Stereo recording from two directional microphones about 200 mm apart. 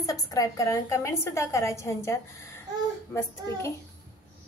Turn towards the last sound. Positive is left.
turn(degrees=15)  # may be behind; listen again after turning